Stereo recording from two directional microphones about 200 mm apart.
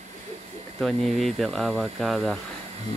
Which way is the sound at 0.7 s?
Centre (ahead or behind).